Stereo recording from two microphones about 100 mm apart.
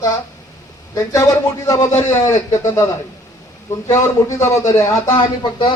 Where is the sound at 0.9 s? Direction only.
30° left (ahead or behind).